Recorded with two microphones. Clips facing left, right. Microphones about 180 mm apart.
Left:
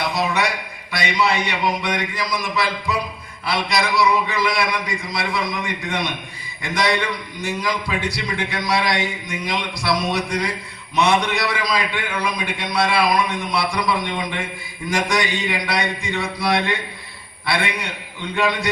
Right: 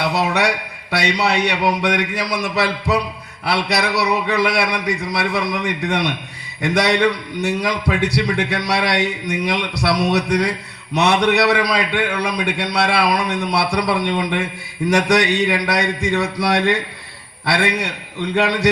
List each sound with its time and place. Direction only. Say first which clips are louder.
0.0 s a man's voice: right 3 dB; 70° right (ahead or behind)